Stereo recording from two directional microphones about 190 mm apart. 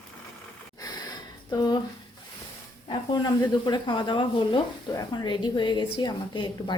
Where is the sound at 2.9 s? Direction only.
20° left (ahead or behind).